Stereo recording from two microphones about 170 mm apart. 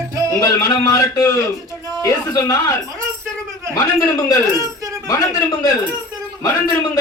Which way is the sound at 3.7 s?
20° left (ahead or behind).